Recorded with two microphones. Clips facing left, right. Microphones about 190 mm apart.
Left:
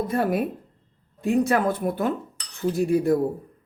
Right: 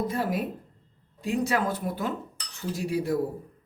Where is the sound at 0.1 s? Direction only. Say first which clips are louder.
Left 5 dB; 55° left (ahead or behind).